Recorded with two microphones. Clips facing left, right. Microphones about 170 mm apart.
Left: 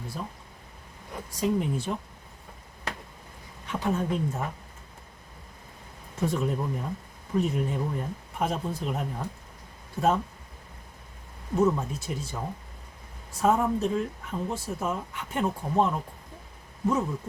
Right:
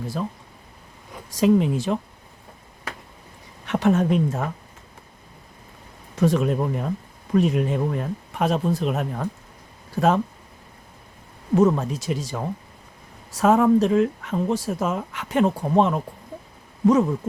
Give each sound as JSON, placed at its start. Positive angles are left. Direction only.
{"t": 0.2, "sound": "speech", "side_deg": -90}
{"t": 3.7, "sound": "a woman's voice", "side_deg": -75}
{"t": 6.1, "sound": "a woman's voice", "side_deg": -90}
{"t": 11.5, "sound": "speech", "side_deg": -90}